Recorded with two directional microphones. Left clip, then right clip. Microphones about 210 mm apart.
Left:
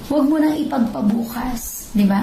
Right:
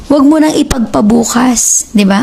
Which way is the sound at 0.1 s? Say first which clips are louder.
Right 10 dB; 50° right (ahead or behind).